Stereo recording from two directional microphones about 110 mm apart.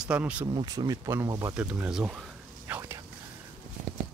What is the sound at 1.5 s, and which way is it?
Speech, 10° right (ahead or behind).